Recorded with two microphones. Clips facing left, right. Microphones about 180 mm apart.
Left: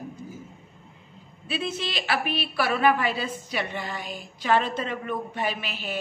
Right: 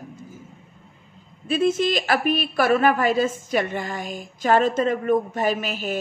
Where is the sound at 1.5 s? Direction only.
45° right (ahead or behind).